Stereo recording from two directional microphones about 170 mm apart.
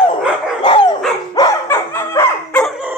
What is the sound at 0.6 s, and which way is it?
Dog, 30° left (ahead or behind).